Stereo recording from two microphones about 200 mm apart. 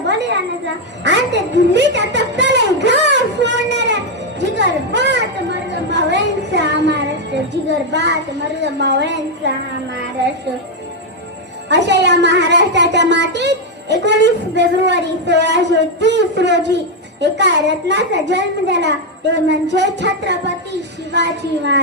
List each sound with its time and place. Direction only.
1.0 s a sound: 60° right (ahead or behind)
7.5 s a woman's voice: 60° right (ahead or behind)
11.7 s a woman's voice: 60° right (ahead or behind)